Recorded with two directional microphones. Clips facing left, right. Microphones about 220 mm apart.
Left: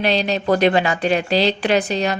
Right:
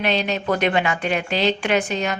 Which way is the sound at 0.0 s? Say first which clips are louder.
Left 3 dB; 35° left (ahead or behind).